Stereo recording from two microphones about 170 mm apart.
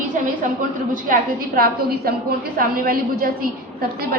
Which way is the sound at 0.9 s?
55° right (ahead or behind).